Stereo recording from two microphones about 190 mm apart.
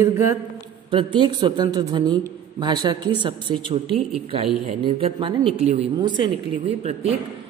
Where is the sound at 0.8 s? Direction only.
25° right (ahead or behind).